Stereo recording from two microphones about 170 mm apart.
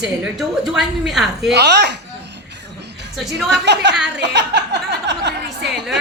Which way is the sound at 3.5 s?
90° right.